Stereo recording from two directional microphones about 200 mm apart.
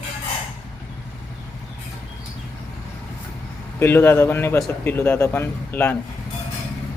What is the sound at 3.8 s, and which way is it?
Speech, 10° left (ahead or behind).